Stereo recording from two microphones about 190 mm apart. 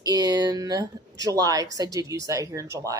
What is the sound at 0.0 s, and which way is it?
A woman's voice, 20° right (ahead or behind).